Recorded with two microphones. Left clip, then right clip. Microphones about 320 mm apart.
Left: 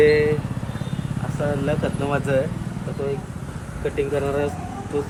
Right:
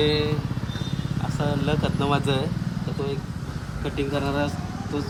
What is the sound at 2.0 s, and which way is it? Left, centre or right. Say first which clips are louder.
Speech: left 1 dB; centre.